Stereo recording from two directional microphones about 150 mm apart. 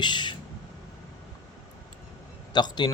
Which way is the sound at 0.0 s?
30° left (ahead or behind).